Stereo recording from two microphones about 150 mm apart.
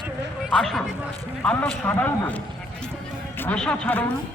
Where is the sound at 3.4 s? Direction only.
5° left (ahead or behind).